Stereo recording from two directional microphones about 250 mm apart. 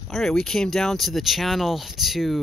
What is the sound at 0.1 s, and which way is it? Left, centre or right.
Speech, centre.